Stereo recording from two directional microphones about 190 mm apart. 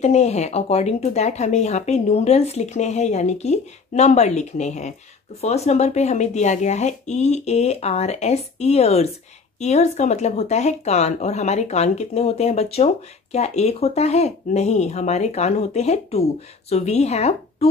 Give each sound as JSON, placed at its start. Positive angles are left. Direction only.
{"t": 0.0, "sound": "speech", "side_deg": 35}